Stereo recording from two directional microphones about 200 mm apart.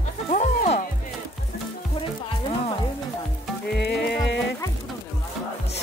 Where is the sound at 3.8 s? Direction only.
55° left (ahead or behind).